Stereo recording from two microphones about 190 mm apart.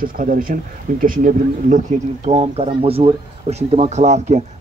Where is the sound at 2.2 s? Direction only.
35° right (ahead or behind).